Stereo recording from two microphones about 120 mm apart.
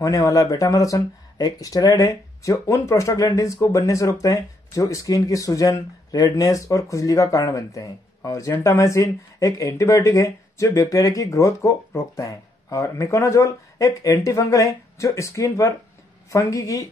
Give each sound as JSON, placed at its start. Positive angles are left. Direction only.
{"t": 0.0, "sound": "speech", "side_deg": 30}